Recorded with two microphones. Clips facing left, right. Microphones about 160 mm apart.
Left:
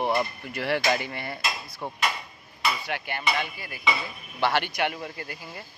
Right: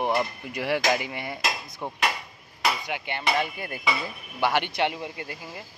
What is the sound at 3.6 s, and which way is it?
Speech, 50° right (ahead or behind).